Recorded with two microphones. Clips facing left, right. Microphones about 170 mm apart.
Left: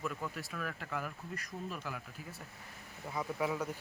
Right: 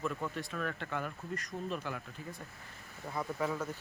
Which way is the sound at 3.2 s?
10° left (ahead or behind).